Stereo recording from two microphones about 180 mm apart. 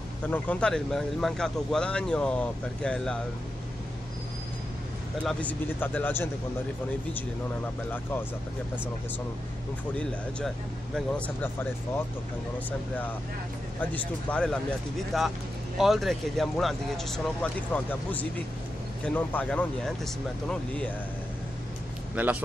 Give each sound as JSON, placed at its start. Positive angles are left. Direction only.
{"t": 0.3, "sound": "speech", "side_deg": 5}
{"t": 5.2, "sound": "speech", "side_deg": 5}
{"t": 7.9, "sound": "speech", "side_deg": 10}
{"t": 13.7, "sound": "speech", "side_deg": 5}
{"t": 22.1, "sound": "speech", "side_deg": -10}